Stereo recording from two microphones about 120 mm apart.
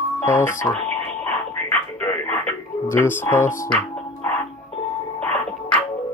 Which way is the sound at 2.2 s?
15° left (ahead or behind).